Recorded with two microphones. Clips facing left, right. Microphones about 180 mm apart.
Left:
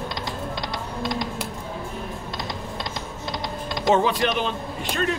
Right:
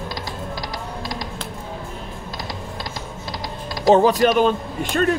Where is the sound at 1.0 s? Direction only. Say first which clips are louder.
Left 6 dB; 25° left (ahead or behind).